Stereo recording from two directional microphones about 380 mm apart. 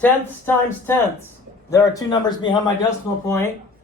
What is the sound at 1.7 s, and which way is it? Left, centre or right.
Speech, centre.